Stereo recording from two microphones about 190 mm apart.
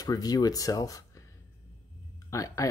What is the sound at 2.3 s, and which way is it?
Speech, 15° left (ahead or behind).